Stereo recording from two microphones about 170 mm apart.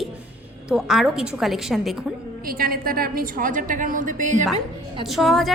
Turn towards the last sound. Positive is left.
turn(degrees=0)  # may be behind; listen again after turning